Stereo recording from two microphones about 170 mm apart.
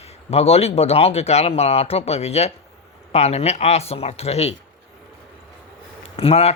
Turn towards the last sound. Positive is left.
turn(degrees=35)  # may be behind; listen again after turning